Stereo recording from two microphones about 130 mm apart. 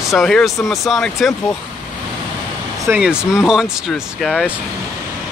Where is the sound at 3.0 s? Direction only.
5° right (ahead or behind).